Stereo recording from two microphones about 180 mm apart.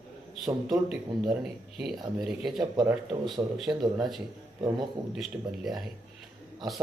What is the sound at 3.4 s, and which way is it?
Speech, 20° right (ahead or behind).